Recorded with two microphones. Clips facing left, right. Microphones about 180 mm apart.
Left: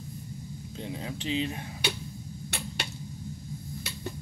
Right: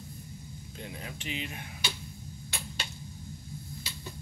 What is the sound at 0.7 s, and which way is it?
Speech, 25° left (ahead or behind).